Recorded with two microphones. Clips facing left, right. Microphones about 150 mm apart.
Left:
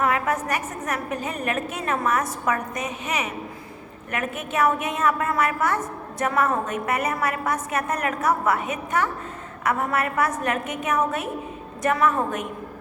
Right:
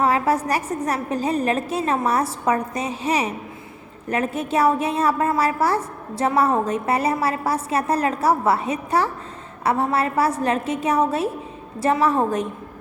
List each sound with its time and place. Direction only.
0.0 s a woman's voice: 30° right (ahead or behind)